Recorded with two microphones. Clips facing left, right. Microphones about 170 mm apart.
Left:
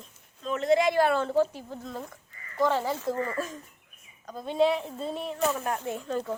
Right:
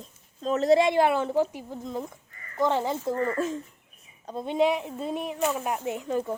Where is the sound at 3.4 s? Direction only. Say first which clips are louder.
Right 5 dB; 25° right (ahead or behind).